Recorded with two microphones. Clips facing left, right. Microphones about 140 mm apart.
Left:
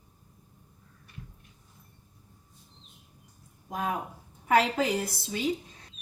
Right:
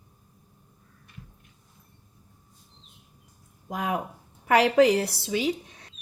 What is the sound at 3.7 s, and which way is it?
Speech, 90° right.